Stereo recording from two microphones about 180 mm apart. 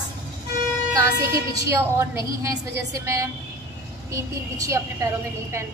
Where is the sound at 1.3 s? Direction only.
15° right (ahead or behind).